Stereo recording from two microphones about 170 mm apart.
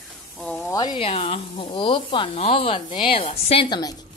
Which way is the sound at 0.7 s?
25° left (ahead or behind).